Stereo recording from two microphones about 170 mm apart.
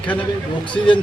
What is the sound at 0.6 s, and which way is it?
Speech, 30° left (ahead or behind).